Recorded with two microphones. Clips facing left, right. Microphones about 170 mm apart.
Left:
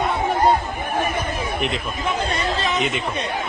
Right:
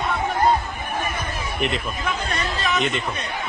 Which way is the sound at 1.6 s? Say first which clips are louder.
Even; centre (ahead or behind).